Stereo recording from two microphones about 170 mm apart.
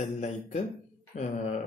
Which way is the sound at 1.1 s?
45° left (ahead or behind).